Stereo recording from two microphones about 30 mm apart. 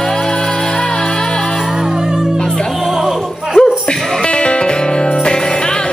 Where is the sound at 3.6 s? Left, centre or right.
Left.